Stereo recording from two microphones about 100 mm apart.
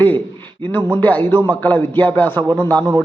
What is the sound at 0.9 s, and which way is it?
A man's voice, 15° left (ahead or behind).